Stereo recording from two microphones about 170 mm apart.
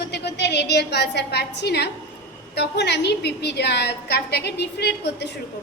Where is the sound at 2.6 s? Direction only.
85° left.